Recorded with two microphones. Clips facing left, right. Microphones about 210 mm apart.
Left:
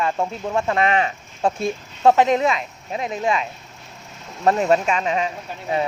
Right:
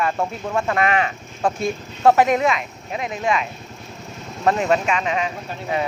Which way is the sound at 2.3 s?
30° left (ahead or behind).